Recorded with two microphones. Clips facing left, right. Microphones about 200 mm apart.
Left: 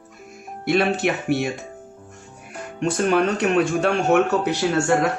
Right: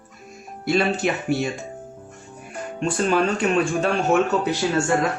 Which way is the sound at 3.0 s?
60° left (ahead or behind).